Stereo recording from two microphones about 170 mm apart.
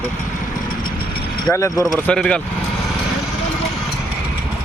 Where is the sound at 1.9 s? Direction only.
5° left (ahead or behind).